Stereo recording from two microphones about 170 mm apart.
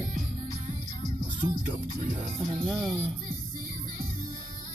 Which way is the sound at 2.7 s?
5° left (ahead or behind).